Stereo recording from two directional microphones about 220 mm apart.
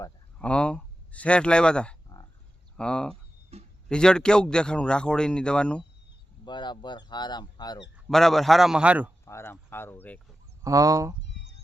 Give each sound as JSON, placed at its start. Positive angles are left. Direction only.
{"t": 0.3, "sound": "speech", "side_deg": 5}
{"t": 3.5, "sound": "a sound", "side_deg": -30}
{"t": 3.8, "sound": "speech", "side_deg": 5}
{"t": 6.4, "sound": "speech", "side_deg": 20}
{"t": 7.9, "sound": "speech", "side_deg": 0}
{"t": 9.2, "sound": "speech", "side_deg": 10}
{"t": 10.6, "sound": "speech", "side_deg": -15}